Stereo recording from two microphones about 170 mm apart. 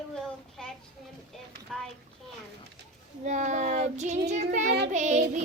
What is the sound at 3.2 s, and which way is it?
Child singing, 45° right (ahead or behind).